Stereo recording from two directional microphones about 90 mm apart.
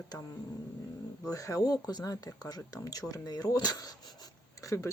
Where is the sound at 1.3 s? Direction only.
40° left (ahead or behind).